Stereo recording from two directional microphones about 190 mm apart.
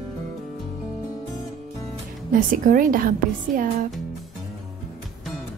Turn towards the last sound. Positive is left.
turn(degrees=-45)  # may be behind; listen again after turning